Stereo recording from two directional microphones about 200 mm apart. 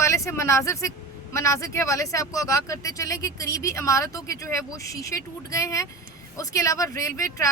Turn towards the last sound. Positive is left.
turn(degrees=15)  # may be behind; listen again after turning